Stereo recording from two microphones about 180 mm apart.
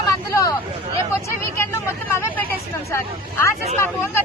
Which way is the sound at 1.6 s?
15° left (ahead or behind).